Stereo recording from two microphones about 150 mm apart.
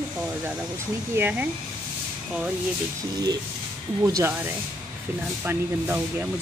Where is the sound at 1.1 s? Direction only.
10° right (ahead or behind).